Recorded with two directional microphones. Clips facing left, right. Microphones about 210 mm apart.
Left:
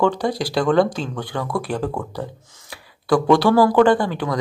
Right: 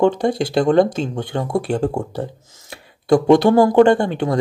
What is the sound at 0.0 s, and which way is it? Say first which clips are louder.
Speech: right 3 dB; 25° right (ahead or behind).